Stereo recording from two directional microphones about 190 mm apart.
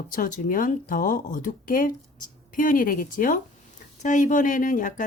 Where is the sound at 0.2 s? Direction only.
45° left (ahead or behind).